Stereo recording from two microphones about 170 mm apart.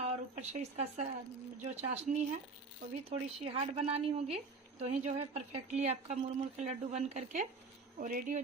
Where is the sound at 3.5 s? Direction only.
35° right (ahead or behind).